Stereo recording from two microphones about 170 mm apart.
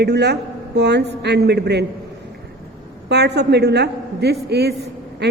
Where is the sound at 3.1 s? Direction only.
75° right (ahead or behind).